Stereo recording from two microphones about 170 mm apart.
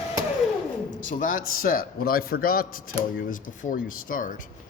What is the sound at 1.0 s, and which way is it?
A man's voice, 50° left (ahead or behind).